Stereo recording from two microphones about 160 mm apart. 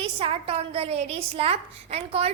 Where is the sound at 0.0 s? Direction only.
35° right (ahead or behind).